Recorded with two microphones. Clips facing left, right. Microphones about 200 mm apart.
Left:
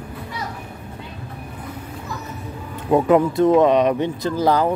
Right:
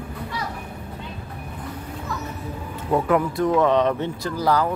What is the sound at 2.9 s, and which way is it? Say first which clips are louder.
Speech: left 5 dB; 20° left (ahead or behind).